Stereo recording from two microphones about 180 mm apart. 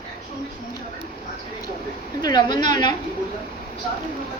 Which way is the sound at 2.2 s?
25° left (ahead or behind).